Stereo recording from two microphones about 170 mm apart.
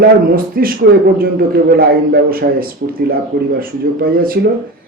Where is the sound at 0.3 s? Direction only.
60° right (ahead or behind).